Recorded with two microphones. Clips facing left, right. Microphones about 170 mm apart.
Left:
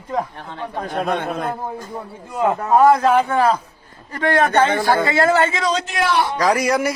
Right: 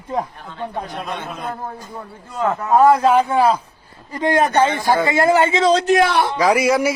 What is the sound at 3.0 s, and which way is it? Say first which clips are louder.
A man's voice: right 1 dB; 10° right (ahead or behind).